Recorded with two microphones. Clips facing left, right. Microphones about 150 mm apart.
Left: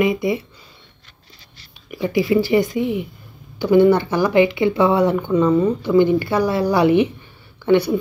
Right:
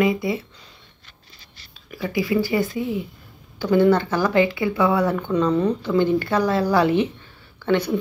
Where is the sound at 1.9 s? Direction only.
25° left (ahead or behind).